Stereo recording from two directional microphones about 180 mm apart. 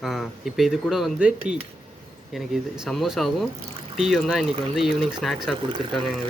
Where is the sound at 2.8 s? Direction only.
Centre (ahead or behind).